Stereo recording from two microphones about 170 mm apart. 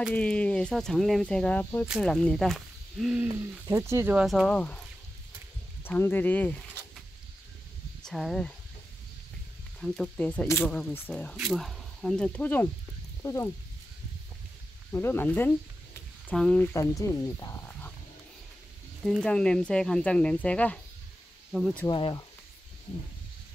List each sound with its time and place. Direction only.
0.1 s speech: 5° left (ahead or behind)
5.9 s speech: 10° left (ahead or behind)
8.0 s speech: centre (ahead or behind)
9.8 s speech: 5° left (ahead or behind)
11.3 s speech: centre (ahead or behind); by 13.5 s 15° left (ahead or behind)
14.9 s speech: 15° left (ahead or behind)
16.7 s speech: 20° left (ahead or behind)
19.0 s speech: 5° left (ahead or behind)
21.5 s speech: 5° right (ahead or behind)
21.8 s speech: 25° left (ahead or behind)